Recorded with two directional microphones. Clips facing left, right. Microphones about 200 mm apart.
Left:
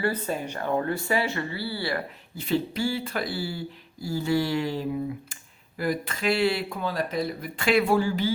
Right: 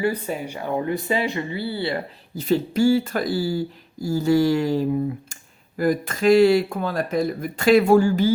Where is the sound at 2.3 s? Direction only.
40° right (ahead or behind).